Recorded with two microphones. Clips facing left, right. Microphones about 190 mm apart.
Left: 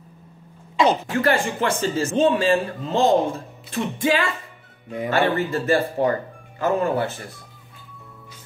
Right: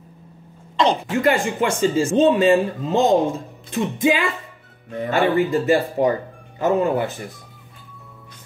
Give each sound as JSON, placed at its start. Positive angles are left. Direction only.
{"t": 1.1, "sound": "a man's voice", "side_deg": -15}